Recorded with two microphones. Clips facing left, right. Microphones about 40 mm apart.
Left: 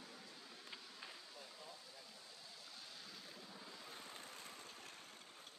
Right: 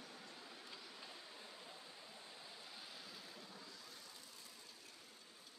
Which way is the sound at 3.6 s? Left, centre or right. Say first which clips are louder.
Left 3 dB; left.